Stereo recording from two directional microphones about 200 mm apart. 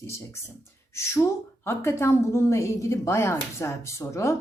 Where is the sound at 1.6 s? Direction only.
10° left (ahead or behind).